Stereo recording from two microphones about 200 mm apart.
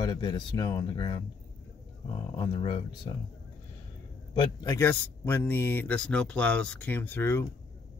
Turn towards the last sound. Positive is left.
turn(degrees=10)  # may be behind; listen again after turning